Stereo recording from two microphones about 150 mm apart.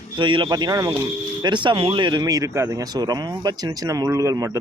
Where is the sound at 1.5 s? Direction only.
30° right (ahead or behind).